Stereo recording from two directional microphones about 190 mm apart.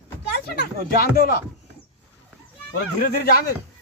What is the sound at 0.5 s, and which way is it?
Speech, 55° left (ahead or behind).